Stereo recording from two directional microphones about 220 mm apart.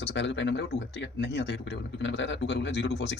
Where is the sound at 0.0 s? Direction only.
50° left (ahead or behind).